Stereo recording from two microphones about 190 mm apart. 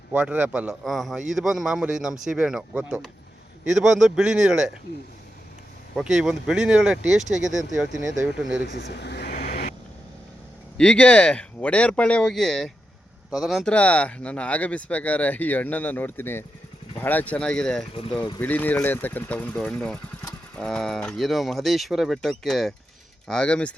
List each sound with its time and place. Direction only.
0.1 s speech: 5° right (ahead or behind)
6.0 s speech: centre (ahead or behind)
8.6 s speech: 60° left (ahead or behind)
9.3 s vehicle: 40° left (ahead or behind)
10.8 s speech: 5° left (ahead or behind)